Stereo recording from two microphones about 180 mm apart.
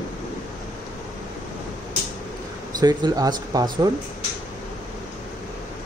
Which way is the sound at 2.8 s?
20° right (ahead or behind).